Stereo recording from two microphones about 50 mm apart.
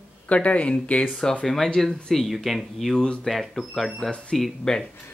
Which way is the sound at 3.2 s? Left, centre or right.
Centre.